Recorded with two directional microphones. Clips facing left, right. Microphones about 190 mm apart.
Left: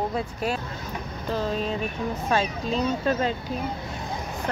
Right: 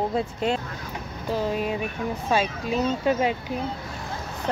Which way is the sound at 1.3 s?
10° right (ahead or behind).